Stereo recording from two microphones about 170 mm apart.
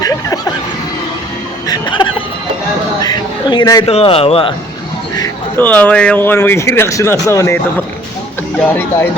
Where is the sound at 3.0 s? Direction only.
25° left (ahead or behind).